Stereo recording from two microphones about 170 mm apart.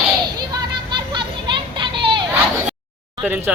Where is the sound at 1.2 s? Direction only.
30° right (ahead or behind).